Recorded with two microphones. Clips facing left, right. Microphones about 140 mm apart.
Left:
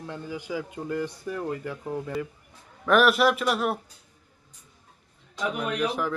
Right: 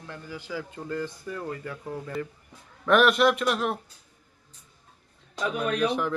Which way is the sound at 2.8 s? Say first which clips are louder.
Even; centre (ahead or behind).